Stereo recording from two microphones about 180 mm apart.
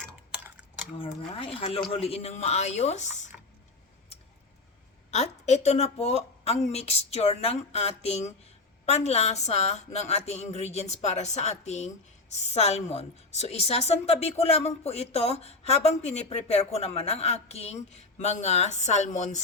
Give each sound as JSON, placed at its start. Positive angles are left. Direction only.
{"t": 1.3, "sound": "a woman's voice", "side_deg": 30}
{"t": 5.1, "sound": "a woman's voice", "side_deg": 40}